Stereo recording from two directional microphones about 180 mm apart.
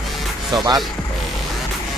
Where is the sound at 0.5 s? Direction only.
20° right (ahead or behind).